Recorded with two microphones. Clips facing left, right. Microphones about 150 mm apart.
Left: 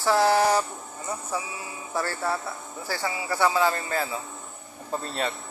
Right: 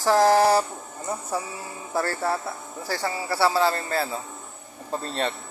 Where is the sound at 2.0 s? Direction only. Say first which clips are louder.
Right 3 dB; 40° right (ahead or behind).